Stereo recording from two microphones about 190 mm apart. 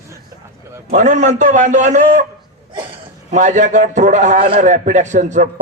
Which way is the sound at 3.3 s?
40° right (ahead or behind).